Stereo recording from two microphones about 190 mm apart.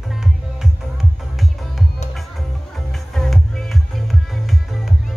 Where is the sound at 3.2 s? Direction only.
Centre (ahead or behind).